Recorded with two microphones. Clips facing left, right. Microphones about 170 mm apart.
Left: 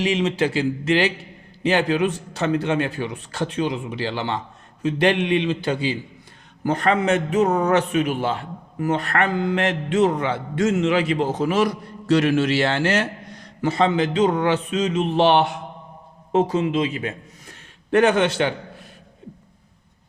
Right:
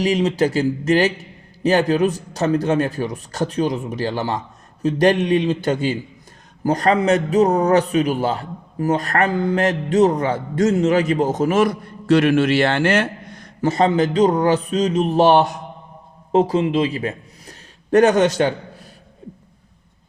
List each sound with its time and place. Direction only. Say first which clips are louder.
0.0 s a man's voice: right 3 dB; 35° right (ahead or behind)